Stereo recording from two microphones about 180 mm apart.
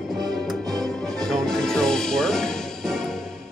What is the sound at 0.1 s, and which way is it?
Music, centre (ahead or behind).